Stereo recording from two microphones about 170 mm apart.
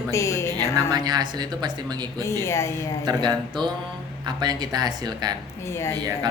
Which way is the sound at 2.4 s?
15° left (ahead or behind).